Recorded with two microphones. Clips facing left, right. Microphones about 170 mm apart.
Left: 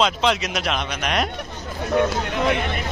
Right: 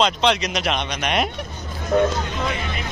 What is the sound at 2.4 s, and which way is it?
Speech, 65° left (ahead or behind).